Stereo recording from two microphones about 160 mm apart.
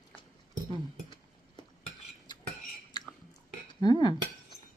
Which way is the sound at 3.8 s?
25° left (ahead or behind).